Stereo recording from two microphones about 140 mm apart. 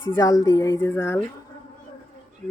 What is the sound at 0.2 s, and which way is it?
Speech, 25° left (ahead or behind).